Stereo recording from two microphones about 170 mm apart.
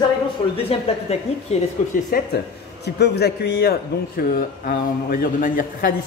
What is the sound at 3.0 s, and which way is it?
A man's voice, 75° left (ahead or behind).